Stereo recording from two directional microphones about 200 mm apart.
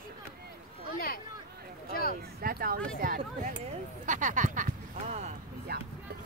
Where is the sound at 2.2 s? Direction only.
50° right (ahead or behind).